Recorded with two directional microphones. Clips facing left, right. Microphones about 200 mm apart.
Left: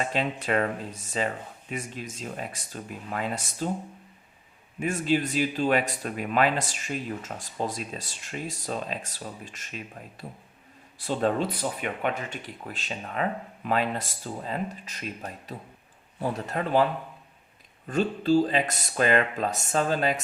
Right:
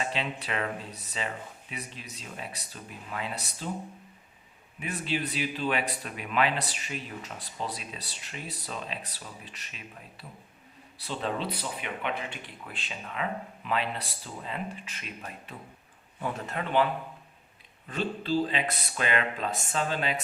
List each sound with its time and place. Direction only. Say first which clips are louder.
0.0 s speech: left 4 dB; 45° left (ahead or behind)
4.8 s speech: left 7 dB; 45° left (ahead or behind)